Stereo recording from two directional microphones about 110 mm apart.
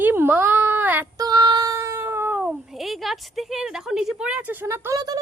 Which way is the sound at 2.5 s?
5° right (ahead or behind).